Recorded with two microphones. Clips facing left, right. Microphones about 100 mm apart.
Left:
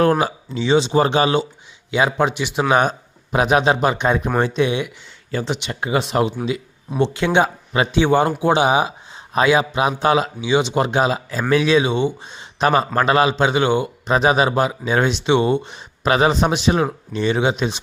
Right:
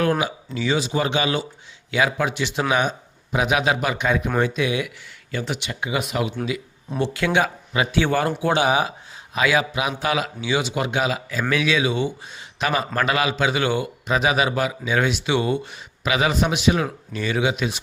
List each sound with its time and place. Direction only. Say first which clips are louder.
0.0 s a man's voice: left 5 dB; 35° left (ahead or behind)
10.8 s a man's voice: left 5 dB; 35° left (ahead or behind)
16.0 s speech: left 5 dB; 35° left (ahead or behind)